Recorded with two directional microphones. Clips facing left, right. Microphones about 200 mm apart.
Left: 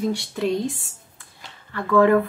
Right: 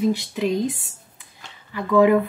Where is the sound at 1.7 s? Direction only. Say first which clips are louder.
Right 1 dB; 10° right (ahead or behind).